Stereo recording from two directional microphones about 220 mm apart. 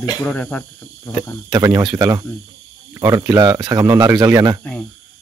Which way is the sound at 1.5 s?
15° right (ahead or behind).